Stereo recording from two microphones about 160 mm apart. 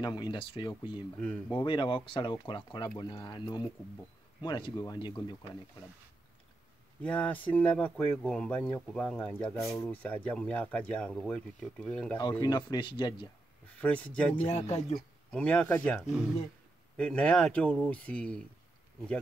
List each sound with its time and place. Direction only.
0.0 s speech: 30° left (ahead or behind)
7.0 s speech: 10° left (ahead or behind)
12.2 s speech: 25° left (ahead or behind)
13.7 s speech: 10° left (ahead or behind)
14.4 s speech: 40° left (ahead or behind)
15.3 s speech: 5° left (ahead or behind)